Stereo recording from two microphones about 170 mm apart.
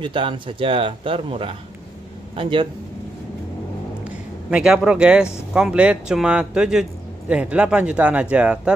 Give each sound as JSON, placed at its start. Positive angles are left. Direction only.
{"t": 0.0, "sound": "speech", "side_deg": -30}
{"t": 4.5, "sound": "speech", "side_deg": -5}